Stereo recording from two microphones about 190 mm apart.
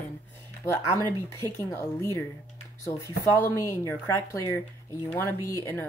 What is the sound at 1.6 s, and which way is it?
Speech, 15° left (ahead or behind).